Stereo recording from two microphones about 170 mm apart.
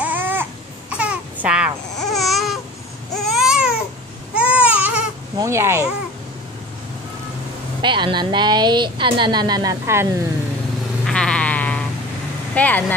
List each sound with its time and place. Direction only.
0.0 s a sound: 10° right (ahead or behind)
0.9 s babbling: 5° right (ahead or behind)
3.2 s baby cry: centre (ahead or behind)
5.4 s speech: 15° right (ahead or behind)
7.8 s speech: 25° right (ahead or behind)
11.1 s sheep: 5° left (ahead or behind)
12.5 s speech: 10° left (ahead or behind)